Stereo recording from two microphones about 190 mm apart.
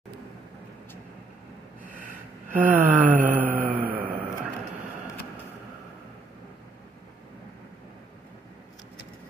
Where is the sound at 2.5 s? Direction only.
10° right (ahead or behind).